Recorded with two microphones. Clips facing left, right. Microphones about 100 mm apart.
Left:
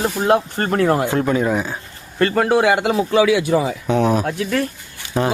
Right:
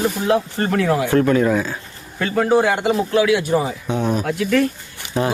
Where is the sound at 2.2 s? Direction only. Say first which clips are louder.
Left 1 dB; 65° left (ahead or behind); by 2.9 s 90° left.